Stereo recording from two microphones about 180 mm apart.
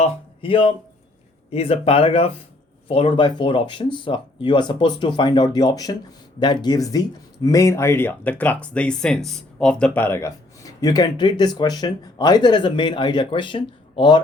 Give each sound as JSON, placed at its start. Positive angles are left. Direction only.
{"t": 0.0, "sound": "speech", "side_deg": 30}